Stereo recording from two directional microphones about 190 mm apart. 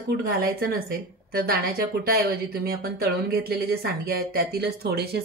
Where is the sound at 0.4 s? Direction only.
55° right (ahead or behind).